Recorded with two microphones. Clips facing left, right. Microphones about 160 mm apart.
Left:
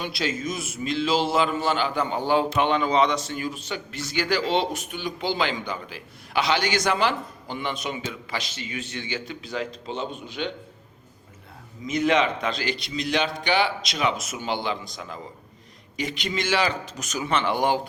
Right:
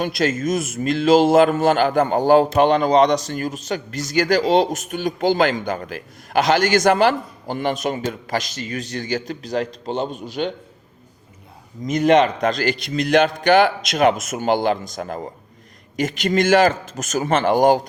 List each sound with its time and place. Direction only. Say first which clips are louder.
0.0 s a man's voice: right 8 dB; 50° right (ahead or behind)
11.8 s a man's voice: right 7 dB; 45° right (ahead or behind)